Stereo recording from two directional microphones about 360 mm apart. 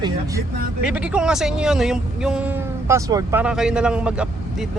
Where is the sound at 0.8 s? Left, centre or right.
Centre.